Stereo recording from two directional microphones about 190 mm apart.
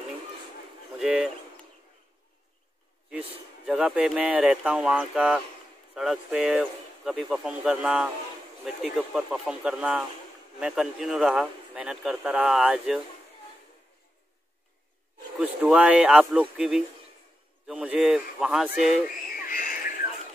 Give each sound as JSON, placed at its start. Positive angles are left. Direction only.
{"t": 0.9, "sound": "speech", "side_deg": -5}
{"t": 3.6, "sound": "speech", "side_deg": -5}
{"t": 15.3, "sound": "speech", "side_deg": -5}
{"t": 19.0, "sound": "a sound", "side_deg": 45}